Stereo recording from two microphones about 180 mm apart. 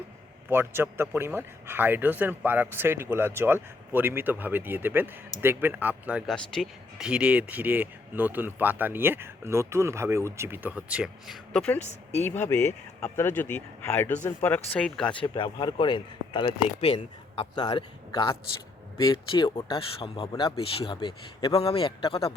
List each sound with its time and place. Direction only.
0.5 s speech: 10° right (ahead or behind); by 15.1 s 5° left (ahead or behind)
15.2 s a man's voice: 25° left (ahead or behind)